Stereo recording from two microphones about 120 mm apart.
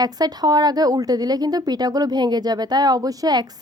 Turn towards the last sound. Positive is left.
turn(degrees=-35)  # may be behind; listen again after turning